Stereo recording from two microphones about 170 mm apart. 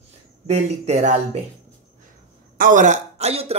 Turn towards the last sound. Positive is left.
turn(degrees=-40)  # may be behind; listen again after turning